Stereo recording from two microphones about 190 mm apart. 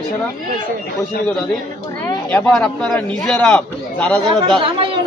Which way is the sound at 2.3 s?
5° left (ahead or behind).